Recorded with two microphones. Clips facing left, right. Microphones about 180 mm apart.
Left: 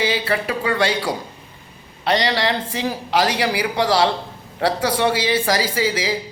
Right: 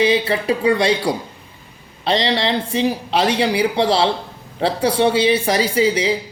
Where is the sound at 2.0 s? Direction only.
25° right (ahead or behind).